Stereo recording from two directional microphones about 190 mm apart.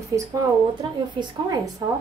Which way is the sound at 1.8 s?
15° right (ahead or behind).